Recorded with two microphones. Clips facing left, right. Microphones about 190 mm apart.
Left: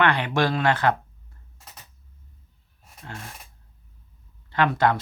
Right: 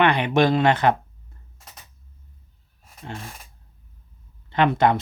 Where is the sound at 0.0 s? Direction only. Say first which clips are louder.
Right 4 dB; 15° right (ahead or behind).